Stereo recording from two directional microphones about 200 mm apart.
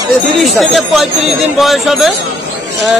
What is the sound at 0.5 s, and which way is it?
Speech, centre (ahead or behind).